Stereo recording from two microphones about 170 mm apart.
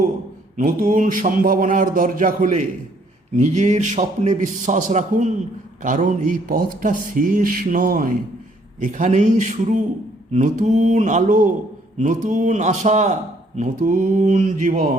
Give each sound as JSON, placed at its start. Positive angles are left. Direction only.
{"t": 0.5, "sound": "speech", "side_deg": -55}